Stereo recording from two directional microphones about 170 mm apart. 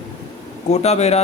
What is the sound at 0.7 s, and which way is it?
Speech, 40° left (ahead or behind).